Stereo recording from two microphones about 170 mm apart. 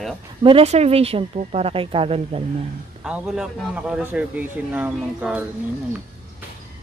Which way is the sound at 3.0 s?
5° right (ahead or behind).